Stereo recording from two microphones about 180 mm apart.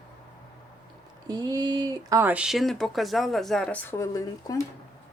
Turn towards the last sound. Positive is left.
turn(degrees=20)  # may be behind; listen again after turning